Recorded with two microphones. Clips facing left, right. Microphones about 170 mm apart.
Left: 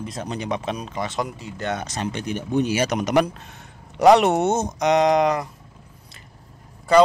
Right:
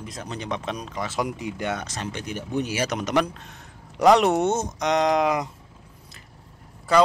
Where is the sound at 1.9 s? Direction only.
20° left (ahead or behind); by 5.3 s centre (ahead or behind).